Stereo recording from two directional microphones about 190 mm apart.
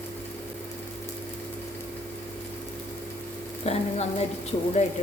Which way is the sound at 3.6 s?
35° left (ahead or behind).